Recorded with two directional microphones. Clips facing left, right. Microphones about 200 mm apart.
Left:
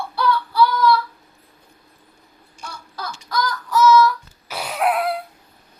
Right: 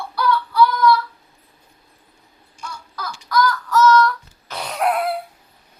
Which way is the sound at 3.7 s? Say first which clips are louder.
Left 2 dB; 10° left (ahead or behind).